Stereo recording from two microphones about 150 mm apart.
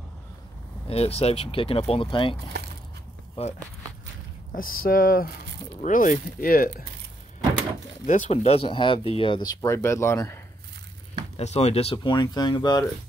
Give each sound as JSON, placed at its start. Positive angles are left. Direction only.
{"t": 0.8, "sound": "speech", "side_deg": 40}
{"t": 3.4, "sound": "speech", "side_deg": 40}
{"t": 4.5, "sound": "speech", "side_deg": 70}
{"t": 5.8, "sound": "speech", "side_deg": 60}
{"t": 8.1, "sound": "speech", "side_deg": 45}
{"t": 11.3, "sound": "speech", "side_deg": 45}